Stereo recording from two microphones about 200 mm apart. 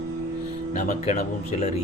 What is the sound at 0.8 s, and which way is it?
Speech, 35° left (ahead or behind).